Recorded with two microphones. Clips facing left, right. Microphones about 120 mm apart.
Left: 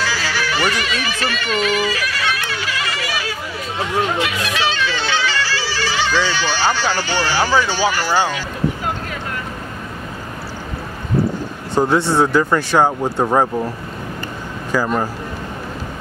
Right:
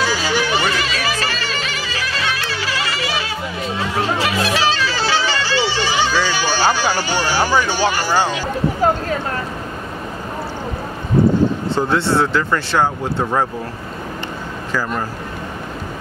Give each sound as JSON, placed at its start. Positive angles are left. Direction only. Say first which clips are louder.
{"t": 0.0, "sound": "music", "louder": "right 3 dB", "side_deg": -15}
{"t": 7.9, "sound": "speech", "louder": "even", "side_deg": -15}
{"t": 8.8, "sound": "speech", "louder": "right 8 dB", "side_deg": -35}
{"t": 11.7, "sound": "speech", "louder": "left 1 dB", "side_deg": 15}